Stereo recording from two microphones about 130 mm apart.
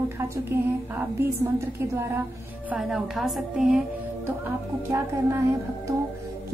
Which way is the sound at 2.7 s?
5° right (ahead or behind).